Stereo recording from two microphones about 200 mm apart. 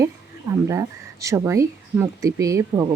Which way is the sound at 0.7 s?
15° right (ahead or behind).